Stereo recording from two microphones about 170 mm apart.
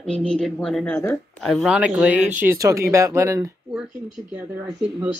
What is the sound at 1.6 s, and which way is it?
Speech, 5° right (ahead or behind).